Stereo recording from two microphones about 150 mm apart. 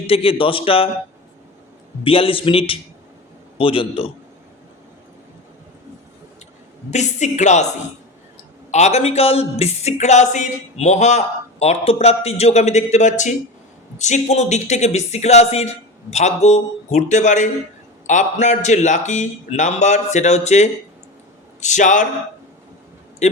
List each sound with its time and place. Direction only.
0.1 s a man's voice: 40° left (ahead or behind)
2.0 s a man's voice: 35° left (ahead or behind)
6.9 s speech: 50° left (ahead or behind)
23.2 s speech: 50° left (ahead or behind)